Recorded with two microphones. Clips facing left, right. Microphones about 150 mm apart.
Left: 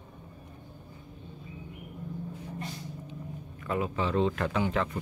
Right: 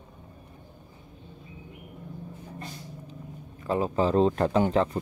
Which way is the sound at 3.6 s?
30° right (ahead or behind).